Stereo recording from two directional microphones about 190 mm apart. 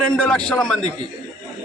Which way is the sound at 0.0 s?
5° left (ahead or behind).